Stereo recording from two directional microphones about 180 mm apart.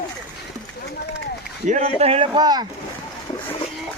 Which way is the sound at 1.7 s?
40° right (ahead or behind).